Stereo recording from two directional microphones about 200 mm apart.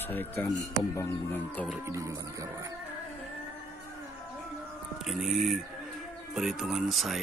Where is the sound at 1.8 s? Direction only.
15° right (ahead or behind).